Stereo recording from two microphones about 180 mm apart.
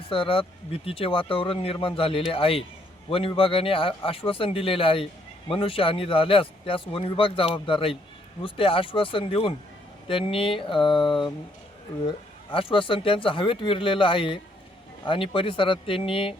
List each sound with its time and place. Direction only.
0.1 s a man's voice: 30° left (ahead or behind)